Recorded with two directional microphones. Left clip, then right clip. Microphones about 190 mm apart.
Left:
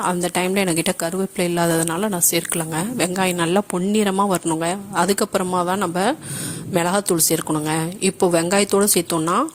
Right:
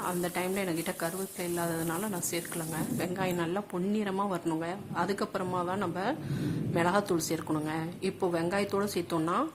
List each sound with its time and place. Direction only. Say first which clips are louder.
0.0 s a woman's voice: left 12 dB; 45° left (ahead or behind)